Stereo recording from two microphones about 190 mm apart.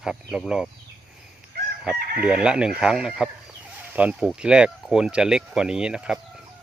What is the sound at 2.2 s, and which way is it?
Speech, 5° right (ahead or behind).